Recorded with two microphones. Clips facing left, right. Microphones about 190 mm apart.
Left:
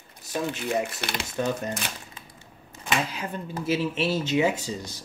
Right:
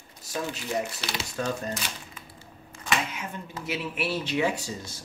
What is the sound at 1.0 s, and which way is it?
Speech, 55° left (ahead or behind).